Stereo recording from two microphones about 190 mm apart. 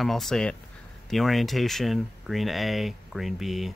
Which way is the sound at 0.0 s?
Centre (ahead or behind).